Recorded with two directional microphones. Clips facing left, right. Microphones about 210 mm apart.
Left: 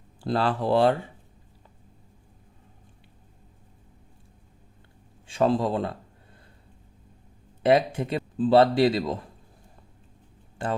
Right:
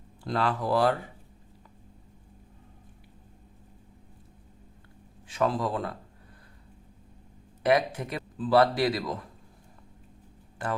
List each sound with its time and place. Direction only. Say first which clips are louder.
0.2 s a man's voice: left 3 dB; 30° left (ahead or behind)
5.3 s a man's voice: left 5 dB; 30° left (ahead or behind)
7.6 s a man's voice: left 4 dB; 25° left (ahead or behind)
10.6 s a man's voice: left 3 dB; 25° left (ahead or behind)